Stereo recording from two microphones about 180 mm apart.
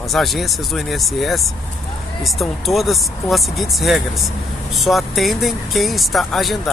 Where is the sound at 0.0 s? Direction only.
Centre (ahead or behind).